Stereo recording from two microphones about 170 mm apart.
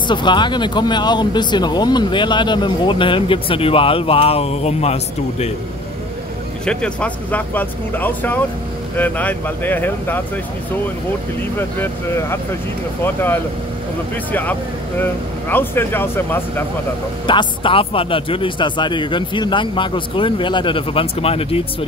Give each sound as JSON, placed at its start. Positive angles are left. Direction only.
{"t": 0.1, "sound": "speech", "side_deg": 25}
{"t": 6.6, "sound": "speech", "side_deg": 5}
{"t": 11.5, "sound": "speech", "side_deg": 15}
{"t": 17.3, "sound": "speech", "side_deg": 30}